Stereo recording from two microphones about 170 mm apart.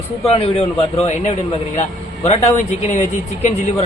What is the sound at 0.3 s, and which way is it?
Speech, 35° left (ahead or behind).